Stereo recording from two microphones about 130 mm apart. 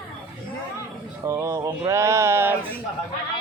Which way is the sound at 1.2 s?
20° right (ahead or behind).